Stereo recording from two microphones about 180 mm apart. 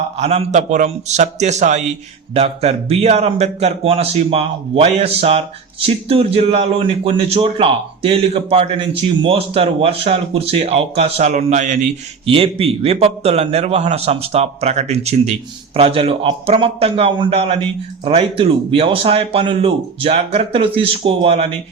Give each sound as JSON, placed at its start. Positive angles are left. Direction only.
{"t": 0.2, "sound": "a man's voice", "side_deg": -35}
{"t": 12.2, "sound": "a man's voice", "side_deg": -30}